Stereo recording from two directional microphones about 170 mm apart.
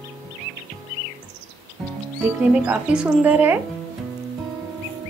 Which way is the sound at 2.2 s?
5° right (ahead or behind).